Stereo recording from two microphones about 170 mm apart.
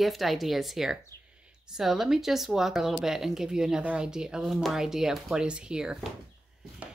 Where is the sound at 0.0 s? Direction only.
Centre (ahead or behind).